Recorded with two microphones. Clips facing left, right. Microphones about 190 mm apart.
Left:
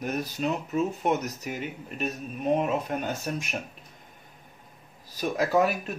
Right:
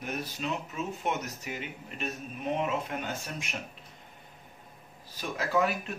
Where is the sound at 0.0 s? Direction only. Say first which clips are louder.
Left 6 dB; 40° left (ahead or behind).